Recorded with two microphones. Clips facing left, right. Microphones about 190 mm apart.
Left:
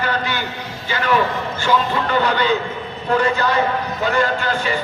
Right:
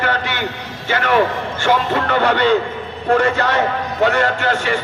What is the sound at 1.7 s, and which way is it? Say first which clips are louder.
Speech: even; 65° right (ahead or behind).